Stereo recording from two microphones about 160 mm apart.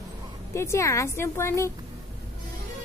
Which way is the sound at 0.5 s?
15° left (ahead or behind).